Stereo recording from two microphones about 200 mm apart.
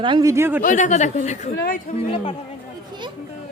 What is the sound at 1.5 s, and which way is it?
Speech, 45° left (ahead or behind).